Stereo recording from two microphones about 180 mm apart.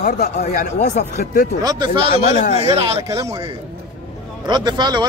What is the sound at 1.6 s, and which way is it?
Speech, 20° right (ahead or behind).